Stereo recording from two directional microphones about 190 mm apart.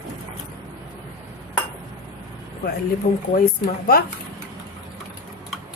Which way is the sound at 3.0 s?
50° left (ahead or behind).